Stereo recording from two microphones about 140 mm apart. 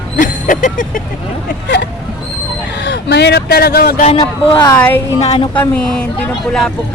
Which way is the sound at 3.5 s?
90° left.